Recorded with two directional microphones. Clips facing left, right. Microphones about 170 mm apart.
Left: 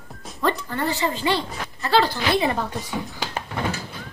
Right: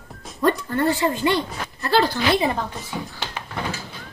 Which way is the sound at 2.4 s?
Centre (ahead or behind).